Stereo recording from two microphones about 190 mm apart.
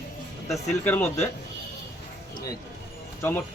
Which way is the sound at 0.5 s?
5° left (ahead or behind).